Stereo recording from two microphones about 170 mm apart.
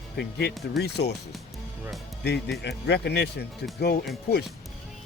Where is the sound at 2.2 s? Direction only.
85° left.